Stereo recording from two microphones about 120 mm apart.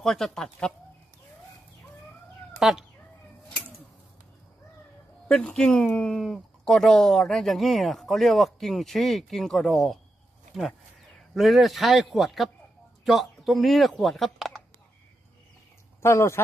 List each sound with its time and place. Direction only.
0.0 s speech: 5° left (ahead or behind)
2.6 s speech: 5° right (ahead or behind)
5.3 s speech: 5° left (ahead or behind)
11.3 s speech: centre (ahead or behind)
16.0 s speech: 25° left (ahead or behind)